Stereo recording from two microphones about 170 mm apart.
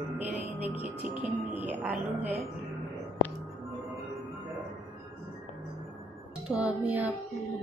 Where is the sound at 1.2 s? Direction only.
10° right (ahead or behind).